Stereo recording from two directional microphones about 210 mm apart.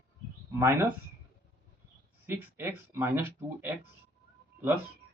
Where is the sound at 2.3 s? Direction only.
10° right (ahead or behind).